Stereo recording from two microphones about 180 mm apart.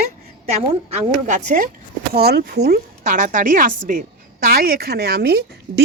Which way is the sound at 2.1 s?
60° right (ahead or behind).